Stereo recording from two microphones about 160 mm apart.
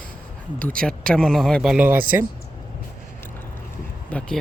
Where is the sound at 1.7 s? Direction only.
10° right (ahead or behind).